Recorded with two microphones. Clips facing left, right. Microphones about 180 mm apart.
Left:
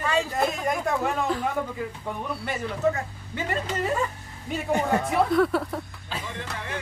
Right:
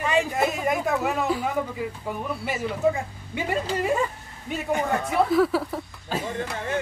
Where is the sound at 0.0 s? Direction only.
15° right (ahead or behind).